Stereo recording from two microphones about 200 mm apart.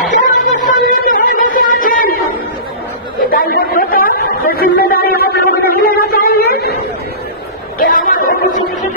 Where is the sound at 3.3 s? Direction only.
45° left (ahead or behind).